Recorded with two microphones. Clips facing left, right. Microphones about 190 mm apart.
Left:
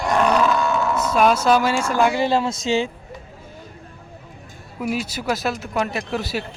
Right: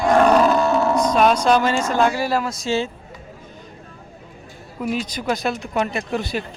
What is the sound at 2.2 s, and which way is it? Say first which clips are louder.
Speech: left 2 dB; 25° left (ahead or behind).